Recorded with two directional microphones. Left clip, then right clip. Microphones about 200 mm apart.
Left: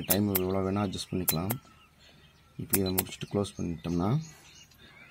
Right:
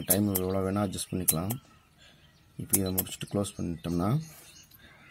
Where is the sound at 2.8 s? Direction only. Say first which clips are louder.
Left 2 dB; 5° left (ahead or behind).